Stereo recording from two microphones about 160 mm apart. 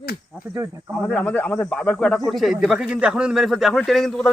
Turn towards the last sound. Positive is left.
turn(degrees=0)  # may be behind; listen again after turning